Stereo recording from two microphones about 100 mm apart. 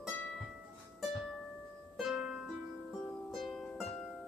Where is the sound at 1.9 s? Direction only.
5° right (ahead or behind).